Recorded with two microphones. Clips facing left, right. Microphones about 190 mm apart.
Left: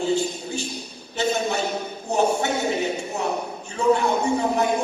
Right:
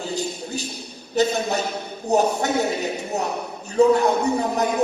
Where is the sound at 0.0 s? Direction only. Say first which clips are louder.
Left 4 dB; 40° right (ahead or behind).